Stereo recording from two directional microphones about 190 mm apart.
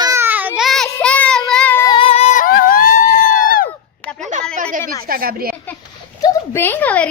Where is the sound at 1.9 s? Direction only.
30° left (ahead or behind); by 3.7 s 50° left (ahead or behind).